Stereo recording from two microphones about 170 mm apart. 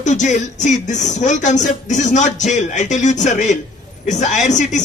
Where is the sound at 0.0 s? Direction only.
45° left (ahead or behind).